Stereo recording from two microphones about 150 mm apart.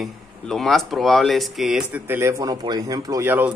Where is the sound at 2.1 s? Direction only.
15° right (ahead or behind).